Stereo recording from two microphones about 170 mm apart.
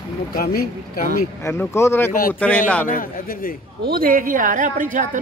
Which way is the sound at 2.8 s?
55° left (ahead or behind).